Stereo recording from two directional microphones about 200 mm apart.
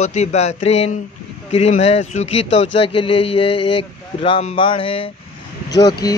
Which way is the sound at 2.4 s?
70° left (ahead or behind).